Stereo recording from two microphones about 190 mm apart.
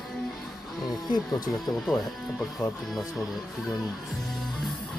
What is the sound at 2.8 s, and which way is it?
Speech, centre (ahead or behind).